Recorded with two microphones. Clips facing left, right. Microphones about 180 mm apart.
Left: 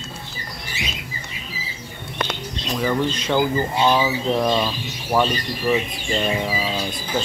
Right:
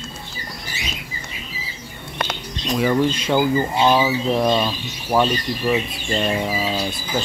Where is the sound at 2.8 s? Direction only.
5° right (ahead or behind).